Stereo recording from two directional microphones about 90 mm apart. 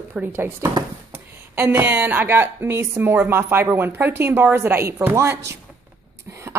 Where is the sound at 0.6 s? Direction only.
40° right (ahead or behind).